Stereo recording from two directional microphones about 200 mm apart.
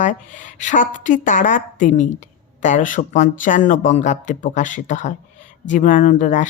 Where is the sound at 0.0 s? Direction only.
40° left (ahead or behind).